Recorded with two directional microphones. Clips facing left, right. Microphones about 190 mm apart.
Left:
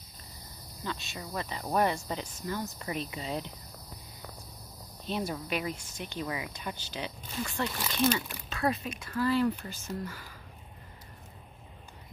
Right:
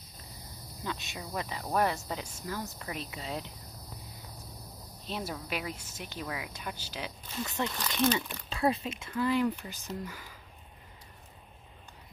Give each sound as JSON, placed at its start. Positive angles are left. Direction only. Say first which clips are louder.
{"t": 0.8, "sound": "speech", "louder": "even", "side_deg": -15}
{"t": 1.6, "sound": "speech", "louder": "left 2 dB", "side_deg": 5}
{"t": 5.0, "sound": "speech", "louder": "left 4 dB", "side_deg": 0}
{"t": 7.6, "sound": "speech", "louder": "even", "side_deg": 10}
{"t": 8.5, "sound": "speech", "louder": "right 1 dB", "side_deg": -25}